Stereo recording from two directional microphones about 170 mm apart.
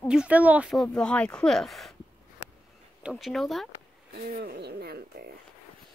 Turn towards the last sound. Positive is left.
turn(degrees=-70)  # may be behind; listen again after turning